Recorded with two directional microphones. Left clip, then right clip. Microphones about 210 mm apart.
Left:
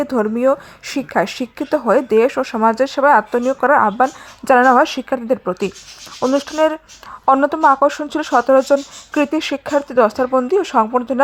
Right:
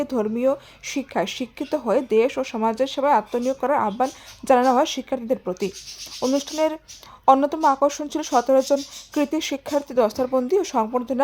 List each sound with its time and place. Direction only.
0.0 s a woman's voice: 20° left (ahead or behind)